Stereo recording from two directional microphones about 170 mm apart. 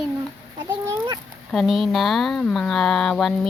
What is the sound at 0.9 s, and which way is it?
Speech, 20° right (ahead or behind).